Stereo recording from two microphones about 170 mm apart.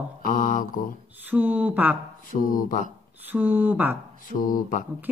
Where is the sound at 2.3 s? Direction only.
55° left (ahead or behind).